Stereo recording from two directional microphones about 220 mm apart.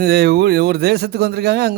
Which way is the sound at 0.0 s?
45° right (ahead or behind).